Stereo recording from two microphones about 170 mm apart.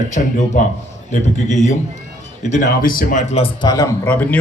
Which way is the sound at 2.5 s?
55° left (ahead or behind).